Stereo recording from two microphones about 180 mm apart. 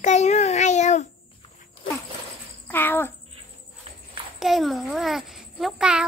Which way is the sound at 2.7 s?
10° left (ahead or behind).